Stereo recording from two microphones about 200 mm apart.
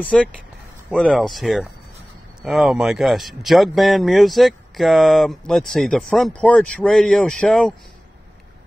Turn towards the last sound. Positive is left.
turn(degrees=0)  # may be behind; listen again after turning